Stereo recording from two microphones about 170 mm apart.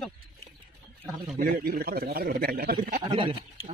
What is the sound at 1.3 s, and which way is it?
Speech, 60° right (ahead or behind).